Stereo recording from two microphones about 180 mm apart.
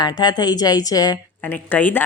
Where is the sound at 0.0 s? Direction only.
25° left (ahead or behind).